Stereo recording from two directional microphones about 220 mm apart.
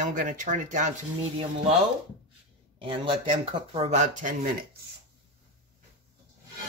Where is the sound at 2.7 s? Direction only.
25° right (ahead or behind); by 4.8 s 40° right (ahead or behind).